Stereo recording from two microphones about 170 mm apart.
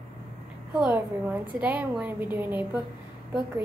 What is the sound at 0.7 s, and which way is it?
A woman's voice, 10° right (ahead or behind).